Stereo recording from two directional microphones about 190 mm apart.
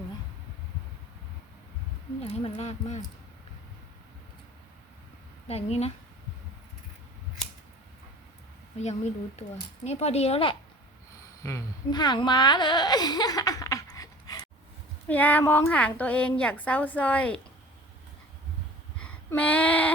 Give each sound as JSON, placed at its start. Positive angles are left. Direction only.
{"t": 2.2, "sound": "a woman's voice", "side_deg": 30}
{"t": 5.5, "sound": "a woman's voice", "side_deg": 35}
{"t": 8.8, "sound": "a woman's voice", "side_deg": 35}
{"t": 15.0, "sound": "a woman's voice", "side_deg": 10}
{"t": 18.9, "sound": "a sound", "side_deg": 5}